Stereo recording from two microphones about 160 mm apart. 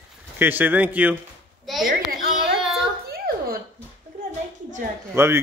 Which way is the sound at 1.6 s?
Centre (ahead or behind).